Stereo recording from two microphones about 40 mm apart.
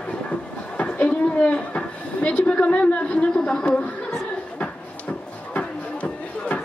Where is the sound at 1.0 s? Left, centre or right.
Left.